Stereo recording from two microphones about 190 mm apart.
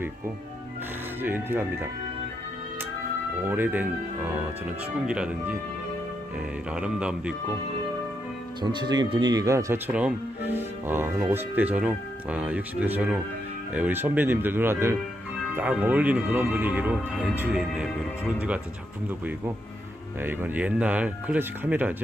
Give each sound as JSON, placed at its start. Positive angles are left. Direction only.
{"t": 1.2, "sound": "speech", "side_deg": -10}
{"t": 3.5, "sound": "speech", "side_deg": -10}
{"t": 5.0, "sound": "speech", "side_deg": -5}
{"t": 6.7, "sound": "speech", "side_deg": -5}
{"t": 8.6, "sound": "speech", "side_deg": -20}
{"t": 20.2, "sound": "speech", "side_deg": -10}